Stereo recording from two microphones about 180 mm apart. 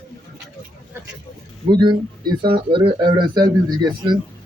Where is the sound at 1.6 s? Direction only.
25° right (ahead or behind).